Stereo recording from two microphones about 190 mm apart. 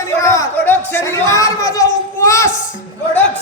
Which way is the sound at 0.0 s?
15° left (ahead or behind).